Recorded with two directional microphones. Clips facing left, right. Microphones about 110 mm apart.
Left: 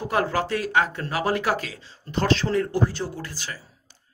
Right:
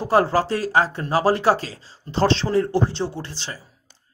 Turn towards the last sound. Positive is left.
turn(degrees=-25)  # may be behind; listen again after turning